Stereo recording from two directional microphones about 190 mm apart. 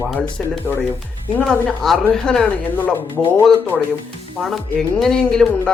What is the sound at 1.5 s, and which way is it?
Speech, centre (ahead or behind).